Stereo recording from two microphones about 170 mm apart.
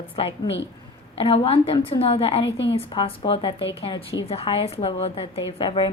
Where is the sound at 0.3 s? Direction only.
90° left.